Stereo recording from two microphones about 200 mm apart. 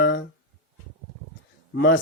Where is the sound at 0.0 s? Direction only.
60° left (ahead or behind).